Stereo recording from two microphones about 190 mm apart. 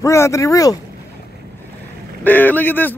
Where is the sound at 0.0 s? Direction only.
15° left (ahead or behind).